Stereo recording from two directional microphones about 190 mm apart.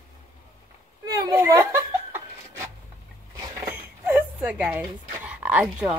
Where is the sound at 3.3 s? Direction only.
15° right (ahead or behind).